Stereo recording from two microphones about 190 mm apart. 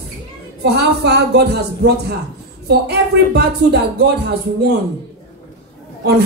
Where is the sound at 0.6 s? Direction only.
60° right (ahead or behind).